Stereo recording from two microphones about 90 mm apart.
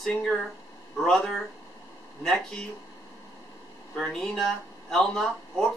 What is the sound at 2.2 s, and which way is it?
Speech, 5° left (ahead or behind).